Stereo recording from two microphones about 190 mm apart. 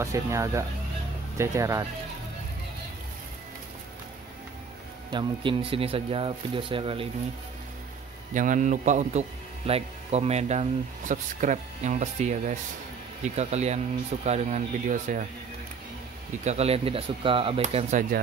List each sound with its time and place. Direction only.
0.0 s speech: 15° right (ahead or behind)
5.1 s speech: 25° right (ahead or behind)
8.3 s speech: 40° right (ahead or behind)
16.4 s speech: 35° right (ahead or behind)